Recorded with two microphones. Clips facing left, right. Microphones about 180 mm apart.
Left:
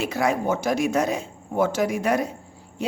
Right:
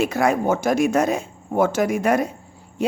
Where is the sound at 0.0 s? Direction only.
50° right (ahead or behind).